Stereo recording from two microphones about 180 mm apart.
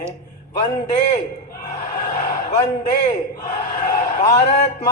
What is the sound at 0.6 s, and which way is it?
Speech, 40° left (ahead or behind).